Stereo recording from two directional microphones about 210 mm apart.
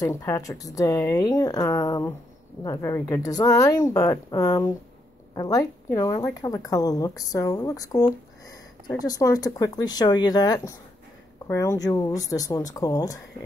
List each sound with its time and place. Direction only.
0.0 s a woman's voice: 15° left (ahead or behind)